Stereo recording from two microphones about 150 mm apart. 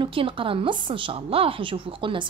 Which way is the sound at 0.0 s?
35° right (ahead or behind).